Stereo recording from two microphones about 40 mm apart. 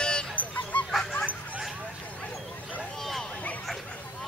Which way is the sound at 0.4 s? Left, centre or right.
Left.